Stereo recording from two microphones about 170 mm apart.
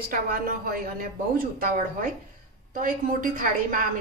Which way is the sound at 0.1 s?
55° right (ahead or behind).